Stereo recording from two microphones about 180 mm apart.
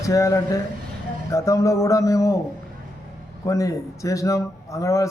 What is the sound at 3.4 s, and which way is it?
A man's voice, 15° left (ahead or behind).